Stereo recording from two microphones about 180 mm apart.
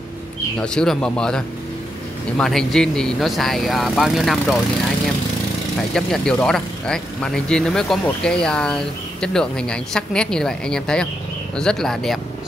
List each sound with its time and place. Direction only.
0.6 s speech: 5° left (ahead or behind)
5.9 s speech: 5° left (ahead or behind)